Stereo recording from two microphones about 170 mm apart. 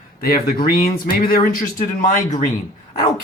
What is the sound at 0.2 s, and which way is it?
Speech, 60° left (ahead or behind).